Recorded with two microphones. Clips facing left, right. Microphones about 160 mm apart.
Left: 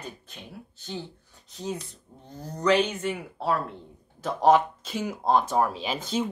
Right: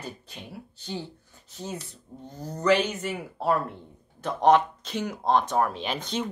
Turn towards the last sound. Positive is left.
turn(degrees=5)  # may be behind; listen again after turning